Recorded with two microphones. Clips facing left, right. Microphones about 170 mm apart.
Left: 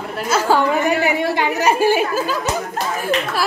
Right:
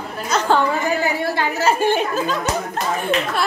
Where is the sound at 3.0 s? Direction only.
5° left (ahead or behind).